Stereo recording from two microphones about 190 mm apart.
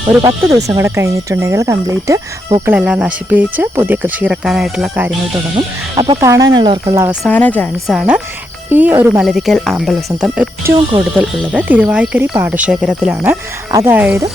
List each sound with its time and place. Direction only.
0.2 s speech: 20° right (ahead or behind)
5.5 s speech: 25° right (ahead or behind)
6.1 s speech: 15° right (ahead or behind)
7.3 s speech: 10° left (ahead or behind)
7.9 s speech: 5° right (ahead or behind)